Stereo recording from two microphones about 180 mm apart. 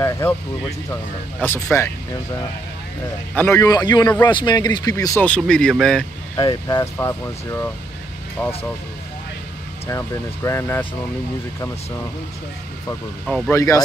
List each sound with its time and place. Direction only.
0.0 s speech: 15° left (ahead or behind)
3.3 s a man's voice: 15° left (ahead or behind)
6.3 s speech: 20° left (ahead or behind)
9.8 s speech: 15° left (ahead or behind)
13.5 s speech: 15° left (ahead or behind)